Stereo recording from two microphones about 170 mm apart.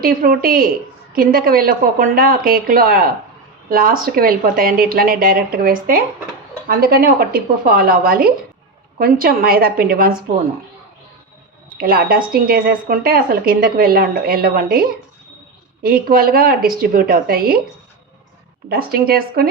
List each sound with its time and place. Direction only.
0.0 s a woman's voice: 60° right (ahead or behind)
11.8 s a woman's voice: 60° right (ahead or behind)
18.7 s a woman's voice: 65° right (ahead or behind)